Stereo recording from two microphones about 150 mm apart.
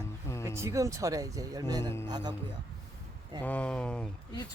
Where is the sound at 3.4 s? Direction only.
10° left (ahead or behind).